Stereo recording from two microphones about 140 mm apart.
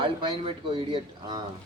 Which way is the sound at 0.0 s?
40° right (ahead or behind).